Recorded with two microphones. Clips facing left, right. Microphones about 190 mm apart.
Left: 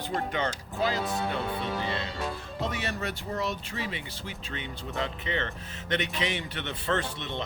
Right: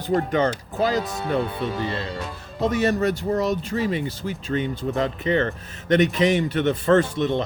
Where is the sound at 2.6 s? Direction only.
45° right (ahead or behind).